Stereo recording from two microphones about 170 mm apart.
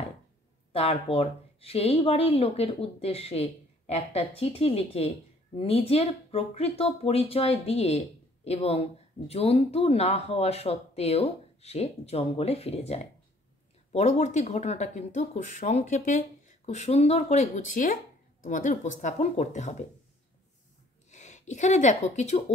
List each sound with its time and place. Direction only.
0.7 s speech: 35° left (ahead or behind)
21.1 s speech: 45° left (ahead or behind)